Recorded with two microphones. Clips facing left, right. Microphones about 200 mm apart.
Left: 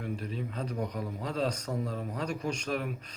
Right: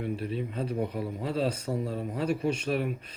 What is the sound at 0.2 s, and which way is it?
A man's voice, 5° right (ahead or behind).